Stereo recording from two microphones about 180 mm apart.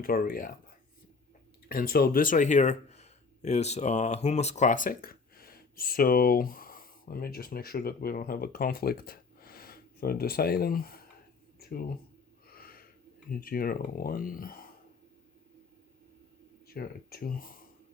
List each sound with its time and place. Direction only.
0.0 s speech: 55° left (ahead or behind)
12.5 s snort: 55° left (ahead or behind)
13.4 s speech: 55° left (ahead or behind)
16.6 s speech: 55° left (ahead or behind)